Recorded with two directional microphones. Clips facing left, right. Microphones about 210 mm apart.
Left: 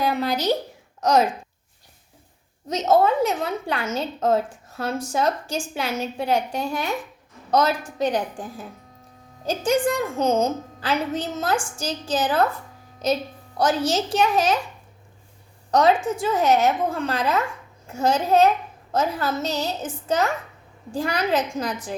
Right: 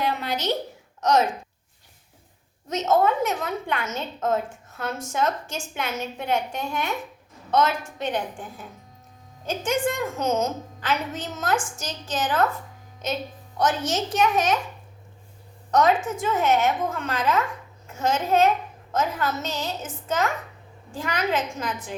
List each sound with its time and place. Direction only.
0.0 s a woman's voice: 35° left (ahead or behind)
2.6 s a woman's voice: 35° left (ahead or behind)
15.7 s a woman's voice: 30° left (ahead or behind)